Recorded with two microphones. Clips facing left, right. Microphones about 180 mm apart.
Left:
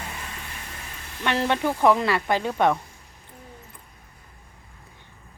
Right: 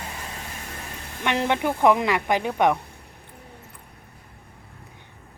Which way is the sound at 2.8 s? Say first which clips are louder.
Right 3 dB; 60° right (ahead or behind).